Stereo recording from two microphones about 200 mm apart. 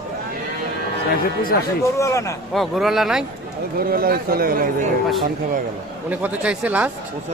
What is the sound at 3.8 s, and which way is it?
Speech, 45° right (ahead or behind).